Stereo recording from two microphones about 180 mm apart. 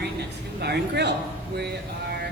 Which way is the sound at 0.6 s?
65° right (ahead or behind).